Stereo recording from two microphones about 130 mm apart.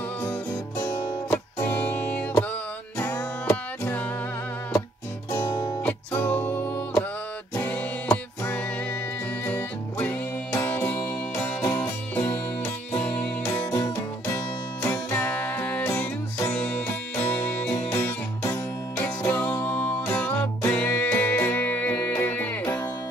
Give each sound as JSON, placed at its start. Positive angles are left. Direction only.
{"t": 0.2, "sound": "music", "side_deg": 15}
{"t": 5.9, "sound": "music", "side_deg": 10}
{"t": 13.5, "sound": "music", "side_deg": 25}